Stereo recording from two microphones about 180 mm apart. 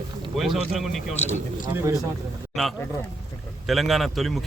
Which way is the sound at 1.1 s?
40° left (ahead or behind).